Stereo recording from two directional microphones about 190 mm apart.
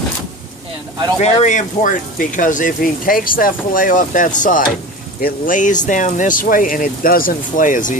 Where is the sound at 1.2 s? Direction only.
40° left (ahead or behind).